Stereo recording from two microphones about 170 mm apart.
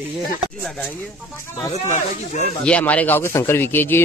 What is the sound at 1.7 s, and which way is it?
Speech, 45° left (ahead or behind).